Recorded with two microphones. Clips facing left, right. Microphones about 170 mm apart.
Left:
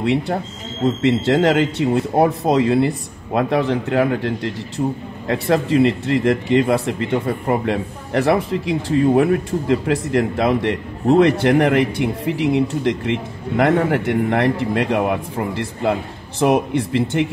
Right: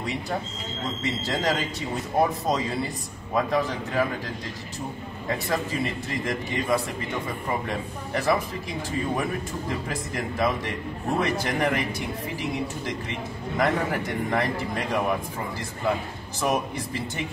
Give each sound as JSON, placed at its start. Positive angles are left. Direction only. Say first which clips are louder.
{"t": 0.0, "sound": "a man's voice", "louder": "left 10 dB", "side_deg": 70}